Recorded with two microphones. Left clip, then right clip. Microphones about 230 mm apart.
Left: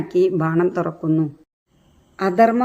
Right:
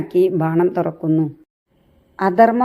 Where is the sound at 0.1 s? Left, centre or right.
Centre.